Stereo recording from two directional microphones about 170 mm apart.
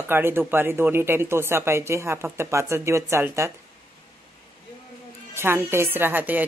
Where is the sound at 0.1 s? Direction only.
10° right (ahead or behind).